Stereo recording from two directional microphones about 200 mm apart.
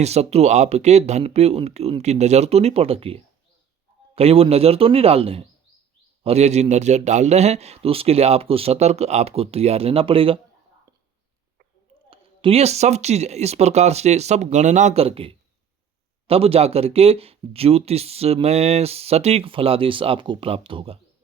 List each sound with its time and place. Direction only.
0.0 s a man's voice: 30° right (ahead or behind)
12.1 s a man's voice: 30° right (ahead or behind)